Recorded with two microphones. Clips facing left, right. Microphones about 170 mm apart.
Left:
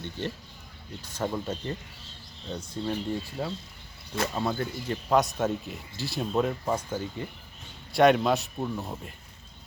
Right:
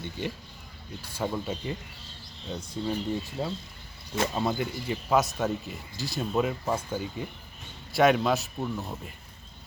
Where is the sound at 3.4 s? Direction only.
15° right (ahead or behind).